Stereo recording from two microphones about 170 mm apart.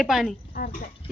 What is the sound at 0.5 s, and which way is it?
Speech, 55° left (ahead or behind).